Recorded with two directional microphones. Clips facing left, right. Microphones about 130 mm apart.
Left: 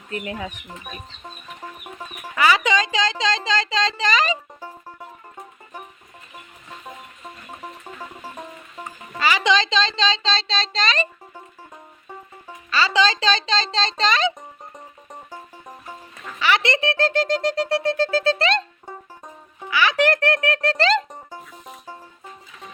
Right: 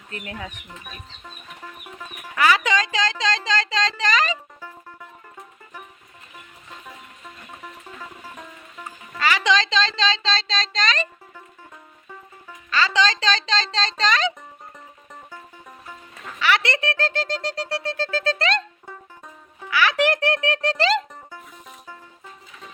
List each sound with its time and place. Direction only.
0.1 s speech: 10° left (ahead or behind)
0.9 s chicken: 25° left (ahead or behind)
2.3 s speech: centre (ahead or behind)
7.6 s music: 30° left (ahead or behind)
9.1 s speech: 5° left (ahead or behind)
12.0 s music: 25° left (ahead or behind)
12.7 s speech: 5° left (ahead or behind)
15.1 s music: 20° left (ahead or behind)
16.4 s a sound: centre (ahead or behind)
17.0 s speech: 15° left (ahead or behind)
18.5 s music: 20° left (ahead or behind)
19.7 s a child's voice: 5° right (ahead or behind)
21.1 s music: 20° left (ahead or behind)